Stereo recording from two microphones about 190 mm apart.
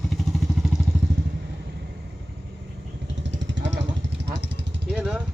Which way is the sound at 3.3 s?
70° right (ahead or behind).